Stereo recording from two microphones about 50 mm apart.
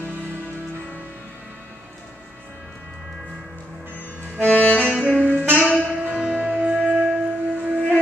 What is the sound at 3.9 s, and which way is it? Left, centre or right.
Music, left.